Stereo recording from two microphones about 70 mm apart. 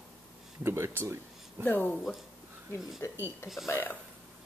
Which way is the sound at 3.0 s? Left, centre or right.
Left.